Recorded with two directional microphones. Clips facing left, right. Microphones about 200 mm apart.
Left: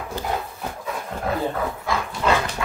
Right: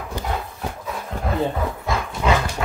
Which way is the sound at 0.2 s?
15° right (ahead or behind).